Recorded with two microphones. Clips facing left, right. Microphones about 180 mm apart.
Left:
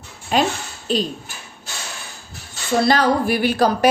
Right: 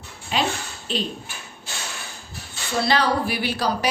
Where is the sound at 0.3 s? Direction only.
45° left (ahead or behind).